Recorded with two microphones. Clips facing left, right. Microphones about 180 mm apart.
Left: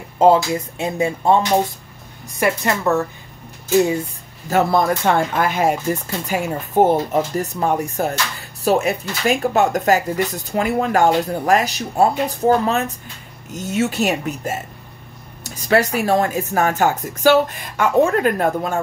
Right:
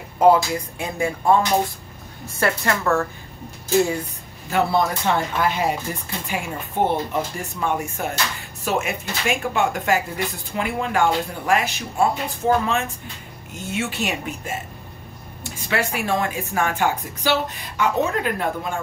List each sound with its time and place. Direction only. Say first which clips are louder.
0.2 s speech: left 2 dB; 25° left (ahead or behind)
4.5 s speech: left 4 dB; 45° left (ahead or behind)